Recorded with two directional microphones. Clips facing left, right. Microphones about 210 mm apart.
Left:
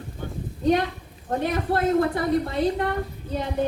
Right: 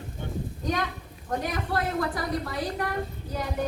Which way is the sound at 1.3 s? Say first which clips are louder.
Left 5 dB; 25° left (ahead or behind).